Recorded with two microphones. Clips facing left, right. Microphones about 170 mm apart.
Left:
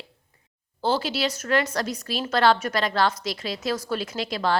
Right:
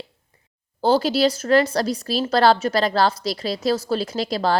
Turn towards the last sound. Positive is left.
turn(degrees=-35)  # may be behind; listen again after turning